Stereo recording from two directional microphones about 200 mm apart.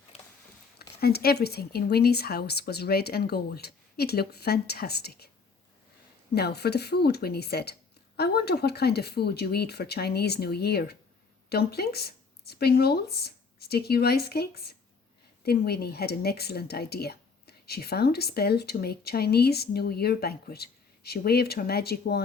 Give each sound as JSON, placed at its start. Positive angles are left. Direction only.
{"t": 0.1, "sound": "a sound", "side_deg": 30}
{"t": 0.8, "sound": "speech", "side_deg": 50}
{"t": 6.3, "sound": "speech", "side_deg": 55}